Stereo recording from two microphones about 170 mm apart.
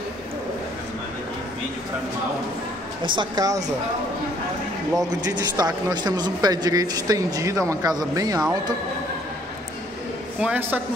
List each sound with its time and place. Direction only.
3.0 s speech: 25° right (ahead or behind)
5.2 s speech: 25° right (ahead or behind)
10.4 s a man's voice: 10° right (ahead or behind)